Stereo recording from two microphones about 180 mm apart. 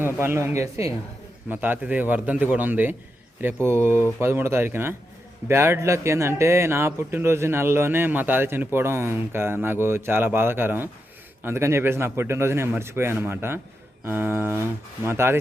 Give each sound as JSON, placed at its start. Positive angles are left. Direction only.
{"t": 0.0, "sound": "speech", "side_deg": -15}